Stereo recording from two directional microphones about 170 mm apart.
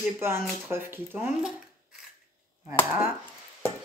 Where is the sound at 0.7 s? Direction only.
15° right (ahead or behind).